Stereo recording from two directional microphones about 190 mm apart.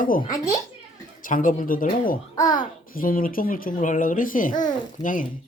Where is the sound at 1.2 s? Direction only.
45° left (ahead or behind).